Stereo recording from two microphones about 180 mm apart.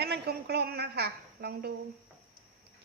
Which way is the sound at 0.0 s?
65° right (ahead or behind).